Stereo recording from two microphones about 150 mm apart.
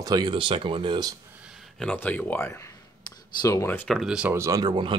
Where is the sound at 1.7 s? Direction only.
10° left (ahead or behind).